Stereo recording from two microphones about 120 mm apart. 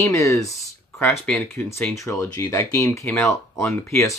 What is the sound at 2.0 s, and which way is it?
Speech, 25° left (ahead or behind).